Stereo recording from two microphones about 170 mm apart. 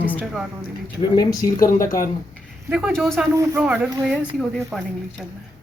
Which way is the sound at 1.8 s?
55° left (ahead or behind).